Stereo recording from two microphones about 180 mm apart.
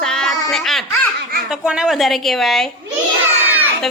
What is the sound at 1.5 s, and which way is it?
A woman's voice, 5° right (ahead or behind).